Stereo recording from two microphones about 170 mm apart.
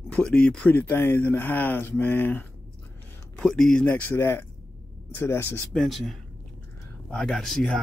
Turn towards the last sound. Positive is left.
turn(degrees=5)  # may be behind; listen again after turning